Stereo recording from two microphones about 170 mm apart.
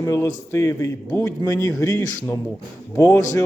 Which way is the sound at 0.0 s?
15° left (ahead or behind).